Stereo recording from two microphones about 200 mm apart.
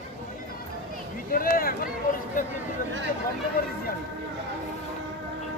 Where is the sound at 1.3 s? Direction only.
45° left (ahead or behind).